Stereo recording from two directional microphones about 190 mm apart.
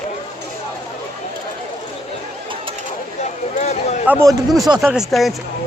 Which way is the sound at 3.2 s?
35° left (ahead or behind).